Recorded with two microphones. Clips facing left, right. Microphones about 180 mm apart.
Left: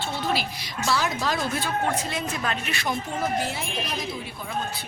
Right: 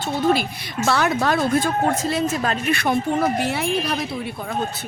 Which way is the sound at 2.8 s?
65° right (ahead or behind).